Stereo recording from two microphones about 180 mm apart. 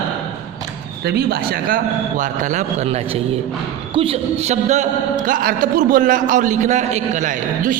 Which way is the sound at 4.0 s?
35° right (ahead or behind).